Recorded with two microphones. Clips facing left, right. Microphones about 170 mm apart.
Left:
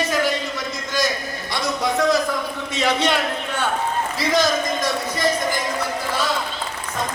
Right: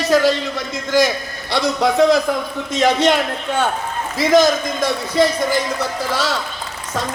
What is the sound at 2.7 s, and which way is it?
A man's voice, 45° right (ahead or behind).